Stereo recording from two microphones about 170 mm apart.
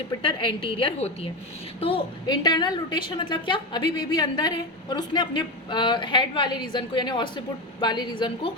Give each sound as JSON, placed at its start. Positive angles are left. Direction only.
{"t": 0.2, "sound": "a woman's voice", "side_deg": 30}